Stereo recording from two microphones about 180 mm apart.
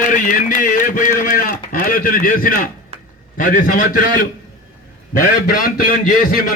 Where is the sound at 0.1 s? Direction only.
50° left (ahead or behind).